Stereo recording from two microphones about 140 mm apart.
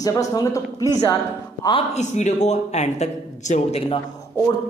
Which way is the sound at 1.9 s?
55° left (ahead or behind).